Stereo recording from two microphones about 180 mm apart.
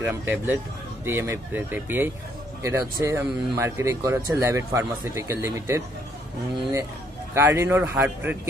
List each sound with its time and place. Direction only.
0.0 s speech: 15° right (ahead or behind)
7.3 s speech: 15° right (ahead or behind)